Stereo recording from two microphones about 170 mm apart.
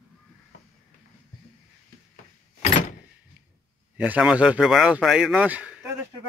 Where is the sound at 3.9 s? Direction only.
10° right (ahead or behind).